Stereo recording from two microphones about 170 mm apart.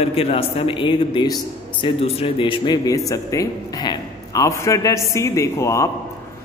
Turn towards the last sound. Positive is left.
turn(degrees=15)  # may be behind; listen again after turning